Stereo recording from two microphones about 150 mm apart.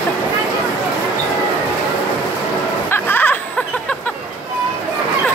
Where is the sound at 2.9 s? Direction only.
15° left (ahead or behind).